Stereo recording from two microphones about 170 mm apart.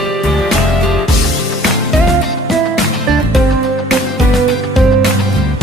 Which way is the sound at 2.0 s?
Centre (ahead or behind).